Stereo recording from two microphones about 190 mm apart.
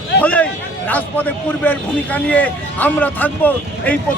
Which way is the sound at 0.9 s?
10° left (ahead or behind).